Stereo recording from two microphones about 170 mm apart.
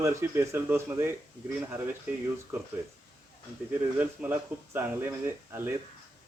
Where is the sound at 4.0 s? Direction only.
10° right (ahead or behind).